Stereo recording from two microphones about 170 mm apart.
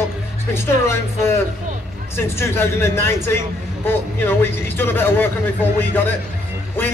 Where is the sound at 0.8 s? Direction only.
15° left (ahead or behind).